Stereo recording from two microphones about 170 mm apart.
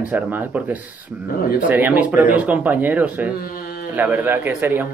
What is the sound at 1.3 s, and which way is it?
Speech, 60° left (ahead or behind).